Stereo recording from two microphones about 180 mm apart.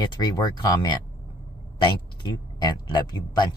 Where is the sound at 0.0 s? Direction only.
25° left (ahead or behind).